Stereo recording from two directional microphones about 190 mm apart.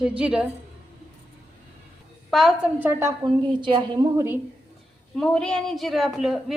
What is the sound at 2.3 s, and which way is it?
Speech, centre (ahead or behind).